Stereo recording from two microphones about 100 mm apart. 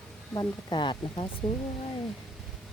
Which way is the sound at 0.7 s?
55° left (ahead or behind).